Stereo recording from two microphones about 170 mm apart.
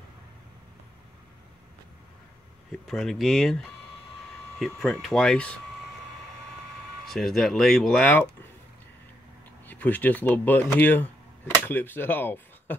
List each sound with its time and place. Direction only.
2.9 s speech: centre (ahead or behind)
7.1 s speech: centre (ahead or behind)
9.7 s speech: 10° left (ahead or behind)